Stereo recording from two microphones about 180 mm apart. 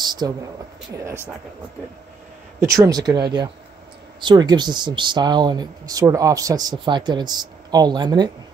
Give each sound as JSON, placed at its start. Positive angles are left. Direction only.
{"t": 0.0, "sound": "a sound", "side_deg": -25}
{"t": 0.9, "sound": "speech", "side_deg": -15}
{"t": 2.6, "sound": "speech", "side_deg": -15}